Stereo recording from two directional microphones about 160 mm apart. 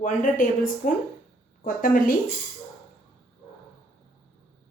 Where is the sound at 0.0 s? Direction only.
55° left (ahead or behind).